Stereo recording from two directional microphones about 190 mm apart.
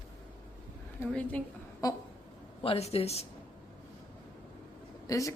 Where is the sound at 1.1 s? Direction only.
5° left (ahead or behind).